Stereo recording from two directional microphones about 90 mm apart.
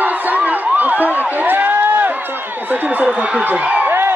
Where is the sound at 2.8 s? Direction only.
20° right (ahead or behind).